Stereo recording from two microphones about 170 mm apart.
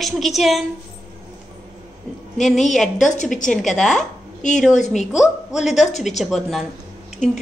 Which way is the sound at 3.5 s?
Centre (ahead or behind).